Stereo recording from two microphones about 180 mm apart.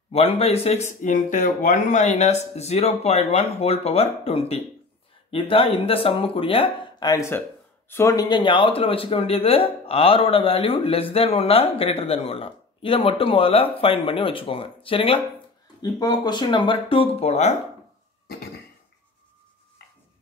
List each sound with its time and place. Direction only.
0.1 s speech: 35° left (ahead or behind)